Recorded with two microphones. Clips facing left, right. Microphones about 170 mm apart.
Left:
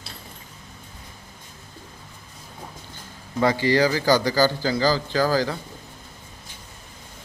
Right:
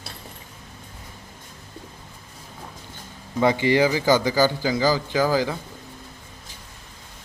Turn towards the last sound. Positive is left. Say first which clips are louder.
# even
turn(degrees=-15)  # may be behind; listen again after turning